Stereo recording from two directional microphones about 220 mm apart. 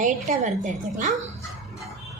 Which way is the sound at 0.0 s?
35° right (ahead or behind).